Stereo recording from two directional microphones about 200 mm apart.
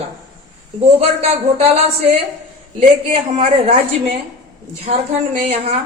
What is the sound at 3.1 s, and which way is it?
Speech, 30° right (ahead or behind).